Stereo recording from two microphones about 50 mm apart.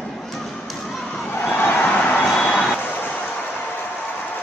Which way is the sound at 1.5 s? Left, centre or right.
Left.